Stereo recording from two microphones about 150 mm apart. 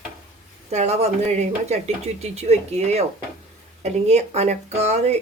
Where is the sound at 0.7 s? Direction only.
45° right (ahead or behind).